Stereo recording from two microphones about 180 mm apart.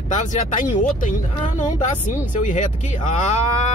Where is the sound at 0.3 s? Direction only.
45° left (ahead or behind).